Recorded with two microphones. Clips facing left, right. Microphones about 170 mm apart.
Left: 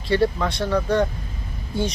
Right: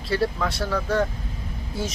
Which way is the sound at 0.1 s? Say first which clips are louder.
Left 4 dB; centre (ahead or behind).